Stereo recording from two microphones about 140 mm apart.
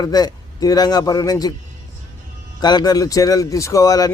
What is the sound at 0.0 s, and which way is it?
A man's voice, 30° left (ahead or behind).